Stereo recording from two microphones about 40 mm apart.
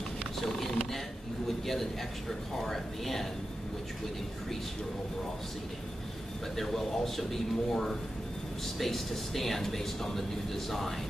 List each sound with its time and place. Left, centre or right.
0.4 s a sound: centre
1.7 s speech: centre
6.5 s speech: centre